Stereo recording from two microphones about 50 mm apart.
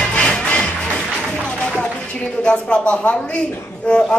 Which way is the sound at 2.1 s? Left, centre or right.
Left.